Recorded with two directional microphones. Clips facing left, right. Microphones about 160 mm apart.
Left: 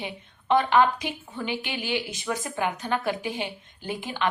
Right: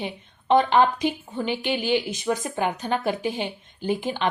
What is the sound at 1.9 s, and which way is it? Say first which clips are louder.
Speech: right 4 dB; 25° right (ahead or behind).